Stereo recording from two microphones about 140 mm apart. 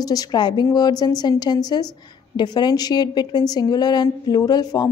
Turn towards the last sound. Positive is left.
turn(degrees=30)  # may be behind; listen again after turning